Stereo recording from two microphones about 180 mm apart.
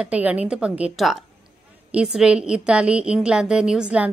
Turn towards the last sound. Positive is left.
turn(degrees=-5)  # may be behind; listen again after turning